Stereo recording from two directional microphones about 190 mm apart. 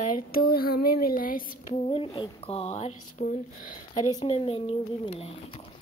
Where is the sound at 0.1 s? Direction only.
50° left (ahead or behind).